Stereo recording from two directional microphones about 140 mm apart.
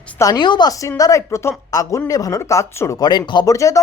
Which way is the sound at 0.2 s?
30° left (ahead or behind).